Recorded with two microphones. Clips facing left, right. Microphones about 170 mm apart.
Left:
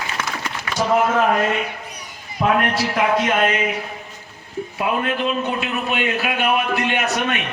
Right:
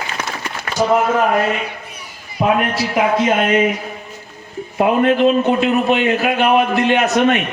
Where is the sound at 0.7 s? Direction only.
50° right (ahead or behind).